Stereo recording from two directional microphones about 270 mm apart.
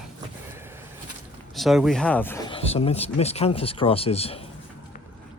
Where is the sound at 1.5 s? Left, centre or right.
Centre.